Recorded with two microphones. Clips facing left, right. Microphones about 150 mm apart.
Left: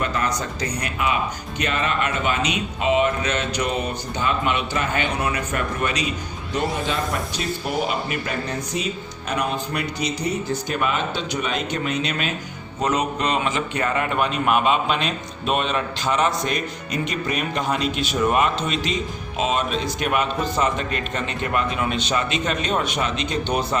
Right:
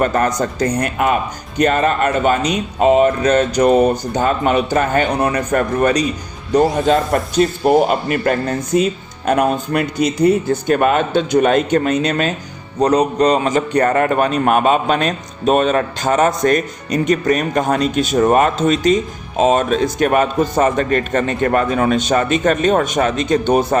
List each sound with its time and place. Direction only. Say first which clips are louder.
0.0 s a man's voice: right 8 dB; 50° right (ahead or behind)